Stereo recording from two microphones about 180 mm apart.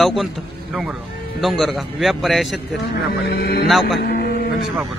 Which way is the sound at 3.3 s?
60° left (ahead or behind).